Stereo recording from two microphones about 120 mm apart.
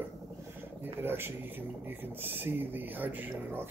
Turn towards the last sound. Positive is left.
turn(degrees=-15)  # may be behind; listen again after turning